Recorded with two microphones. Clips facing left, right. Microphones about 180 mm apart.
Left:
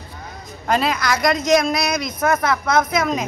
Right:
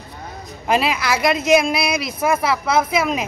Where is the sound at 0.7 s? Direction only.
5° right (ahead or behind).